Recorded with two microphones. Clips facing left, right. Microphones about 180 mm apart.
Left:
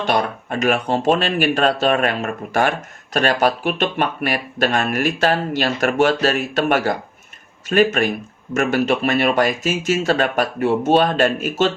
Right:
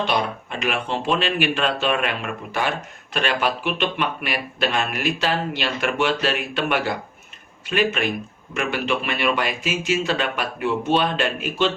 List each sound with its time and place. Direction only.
0.0 s speech: 45° left (ahead or behind)